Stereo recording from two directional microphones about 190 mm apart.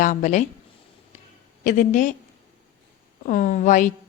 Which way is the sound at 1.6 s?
45° left (ahead or behind).